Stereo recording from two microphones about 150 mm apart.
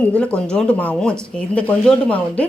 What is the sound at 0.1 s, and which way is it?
A woman's voice, 5° left (ahead or behind).